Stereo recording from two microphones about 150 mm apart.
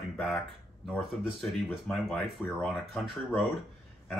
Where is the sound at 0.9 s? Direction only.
5° left (ahead or behind).